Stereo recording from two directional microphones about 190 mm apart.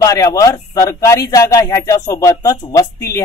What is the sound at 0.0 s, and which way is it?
Speech, 15° left (ahead or behind).